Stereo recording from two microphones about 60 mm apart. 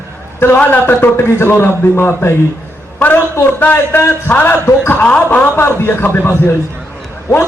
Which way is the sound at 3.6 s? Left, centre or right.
Left.